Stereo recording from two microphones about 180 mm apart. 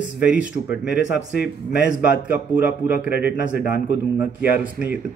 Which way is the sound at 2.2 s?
10° right (ahead or behind).